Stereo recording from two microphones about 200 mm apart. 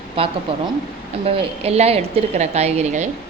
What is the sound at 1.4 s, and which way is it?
A woman's voice, 30° right (ahead or behind).